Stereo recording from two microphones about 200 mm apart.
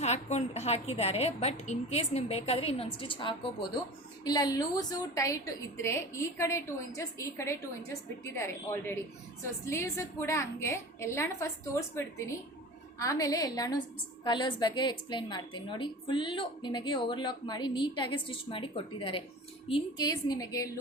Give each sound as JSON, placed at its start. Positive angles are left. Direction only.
{"t": 0.0, "sound": "a woman's voice", "side_deg": 35}